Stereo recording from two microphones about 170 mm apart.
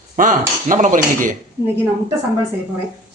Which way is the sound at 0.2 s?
50° right (ahead or behind).